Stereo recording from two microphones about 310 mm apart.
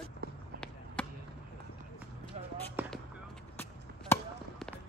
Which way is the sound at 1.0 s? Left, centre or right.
Centre.